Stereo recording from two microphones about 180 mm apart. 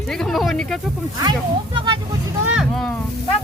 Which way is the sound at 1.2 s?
25° right (ahead or behind).